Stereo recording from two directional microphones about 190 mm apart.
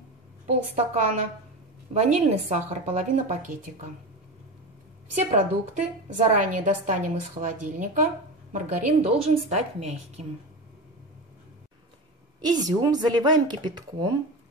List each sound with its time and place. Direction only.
0.5 s a woman's voice: 35° right (ahead or behind)
5.3 s a woman's voice: 40° right (ahead or behind)
12.4 s speech: 20° right (ahead or behind)